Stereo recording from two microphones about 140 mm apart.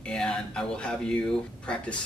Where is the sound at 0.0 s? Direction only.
5° left (ahead or behind).